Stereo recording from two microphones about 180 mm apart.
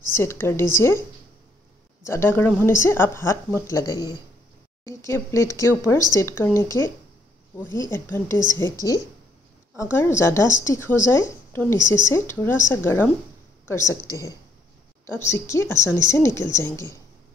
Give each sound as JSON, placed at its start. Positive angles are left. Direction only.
{"t": 0.1, "sound": "a woman's voice", "side_deg": 15}
{"t": 2.0, "sound": "a woman's voice", "side_deg": 15}
{"t": 9.8, "sound": "a woman's voice", "side_deg": 15}